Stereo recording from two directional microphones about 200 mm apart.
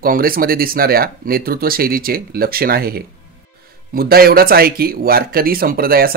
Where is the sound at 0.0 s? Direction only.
45° right (ahead or behind).